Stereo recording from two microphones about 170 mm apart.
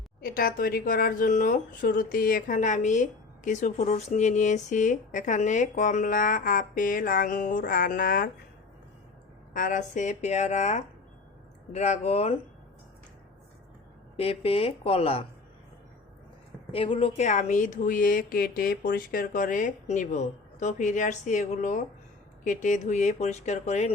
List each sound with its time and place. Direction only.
0.2 s speech: 60° left (ahead or behind)
9.5 s speech: 50° left (ahead or behind)
14.2 s speech: 35° left (ahead or behind)
16.7 s speech: 35° left (ahead or behind)